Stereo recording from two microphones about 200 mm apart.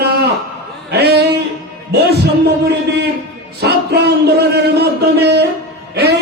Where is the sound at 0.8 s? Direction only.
55° right (ahead or behind).